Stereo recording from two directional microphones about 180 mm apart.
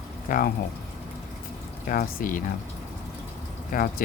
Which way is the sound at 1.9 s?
50° left (ahead or behind).